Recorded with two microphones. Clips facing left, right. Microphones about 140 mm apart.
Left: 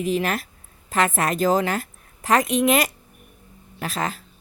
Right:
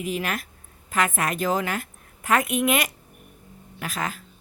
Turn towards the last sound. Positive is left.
turn(degrees=40)  # may be behind; listen again after turning